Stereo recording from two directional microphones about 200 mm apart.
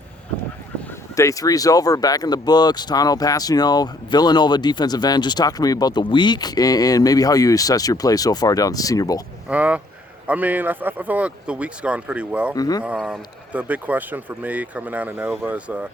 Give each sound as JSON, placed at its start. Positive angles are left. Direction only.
{"t": 1.1, "sound": "speech", "side_deg": 15}
{"t": 9.5, "sound": "speech", "side_deg": -5}
{"t": 12.5, "sound": "speech", "side_deg": 20}
{"t": 12.8, "sound": "speech", "side_deg": -5}